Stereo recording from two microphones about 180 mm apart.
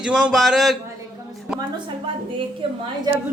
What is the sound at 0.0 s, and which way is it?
Speech, 5° right (ahead or behind).